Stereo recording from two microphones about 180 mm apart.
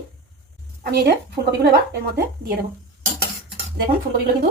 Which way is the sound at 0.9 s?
60° right (ahead or behind).